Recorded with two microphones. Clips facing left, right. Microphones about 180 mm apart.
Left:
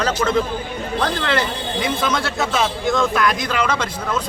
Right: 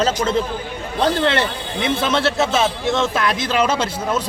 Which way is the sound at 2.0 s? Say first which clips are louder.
Right 3 dB; 25° right (ahead or behind).